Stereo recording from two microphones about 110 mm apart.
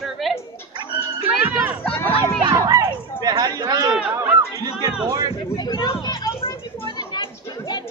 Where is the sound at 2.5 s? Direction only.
30° right (ahead or behind).